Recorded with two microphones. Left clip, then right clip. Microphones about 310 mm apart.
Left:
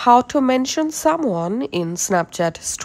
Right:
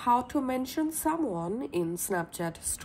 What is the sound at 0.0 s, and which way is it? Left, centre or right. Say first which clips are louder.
Speech: left 13 dB; left.